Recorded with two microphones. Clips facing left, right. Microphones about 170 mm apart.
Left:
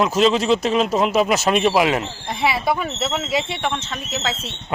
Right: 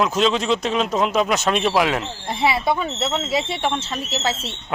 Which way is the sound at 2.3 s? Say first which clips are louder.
Right 1 dB; 25° right (ahead or behind).